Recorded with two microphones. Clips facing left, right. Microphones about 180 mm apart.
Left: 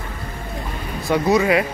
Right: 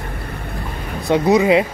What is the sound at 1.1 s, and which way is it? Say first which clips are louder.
Speech: right 3 dB; 20° right (ahead or behind).